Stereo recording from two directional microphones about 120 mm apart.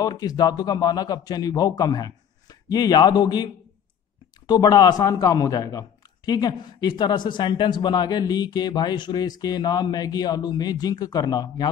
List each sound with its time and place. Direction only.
0.0 s speech: 35° left (ahead or behind)
4.5 s speech: 35° left (ahead or behind)